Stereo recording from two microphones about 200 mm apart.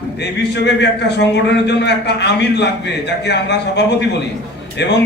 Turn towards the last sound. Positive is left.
turn(degrees=60)  # may be behind; listen again after turning